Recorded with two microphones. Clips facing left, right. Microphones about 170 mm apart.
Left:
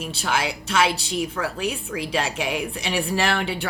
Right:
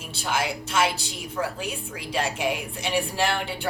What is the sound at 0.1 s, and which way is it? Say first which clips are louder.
A woman's voice: even; 80° left.